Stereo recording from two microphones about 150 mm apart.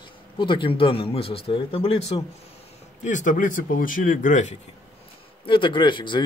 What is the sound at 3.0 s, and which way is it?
Speech, 60° left (ahead or behind).